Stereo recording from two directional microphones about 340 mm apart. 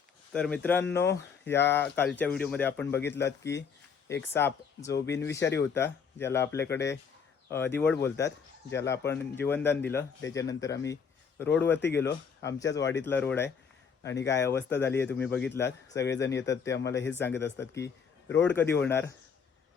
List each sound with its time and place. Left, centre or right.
0.3 s speech: centre
17.8 s a sound: left
18.4 s speech: centre